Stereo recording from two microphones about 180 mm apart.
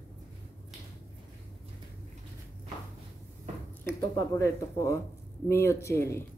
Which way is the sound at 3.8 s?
15° left (ahead or behind).